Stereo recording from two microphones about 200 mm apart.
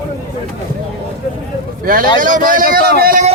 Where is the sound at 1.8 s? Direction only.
45° right (ahead or behind).